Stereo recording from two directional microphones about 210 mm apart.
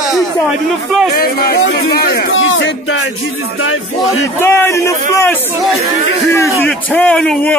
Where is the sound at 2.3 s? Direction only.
65° left (ahead or behind).